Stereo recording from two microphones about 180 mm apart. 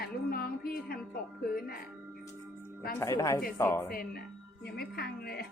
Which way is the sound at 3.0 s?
15° left (ahead or behind).